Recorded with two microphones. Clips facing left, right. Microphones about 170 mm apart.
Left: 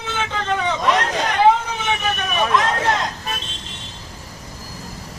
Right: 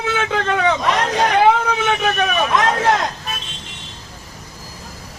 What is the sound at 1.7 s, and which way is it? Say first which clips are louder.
Vehicle: right 5 dB; 70° right (ahead or behind).